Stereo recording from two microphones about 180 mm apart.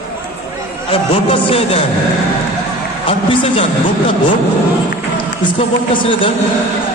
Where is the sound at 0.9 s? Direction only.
30° left (ahead or behind).